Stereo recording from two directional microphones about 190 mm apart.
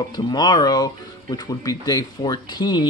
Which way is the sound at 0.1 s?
20° left (ahead or behind).